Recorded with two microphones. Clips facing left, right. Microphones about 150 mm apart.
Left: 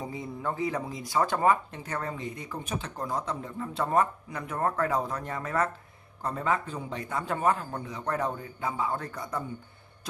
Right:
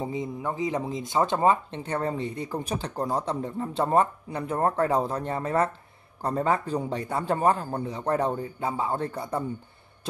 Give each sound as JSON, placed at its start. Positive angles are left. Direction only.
{"t": 0.0, "sound": "speech", "side_deg": -20}